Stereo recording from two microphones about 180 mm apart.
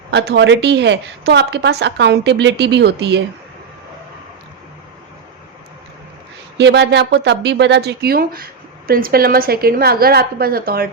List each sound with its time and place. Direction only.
0.1 s a woman's voice: 70° right (ahead or behind)
6.6 s a woman's voice: 75° right (ahead or behind); by 10.8 s 55° right (ahead or behind)